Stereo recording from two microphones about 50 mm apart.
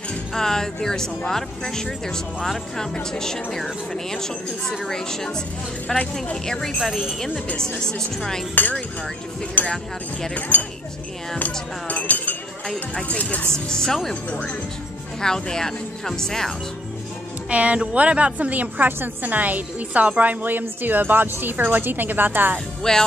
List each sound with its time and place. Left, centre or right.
0.3 s speech: centre
8.6 s speech: left
11.3 s speech: left
13.7 s speech: centre
15.2 s speech: centre
17.5 s a woman's voice: right
22.8 s speech: centre